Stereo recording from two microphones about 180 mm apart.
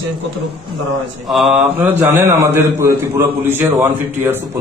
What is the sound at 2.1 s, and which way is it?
Speech, 15° right (ahead or behind).